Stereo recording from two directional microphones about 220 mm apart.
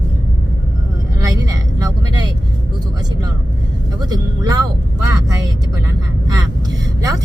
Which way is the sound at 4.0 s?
15° right (ahead or behind).